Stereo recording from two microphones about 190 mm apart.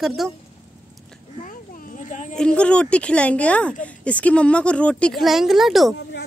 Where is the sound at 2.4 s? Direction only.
5° left (ahead or behind).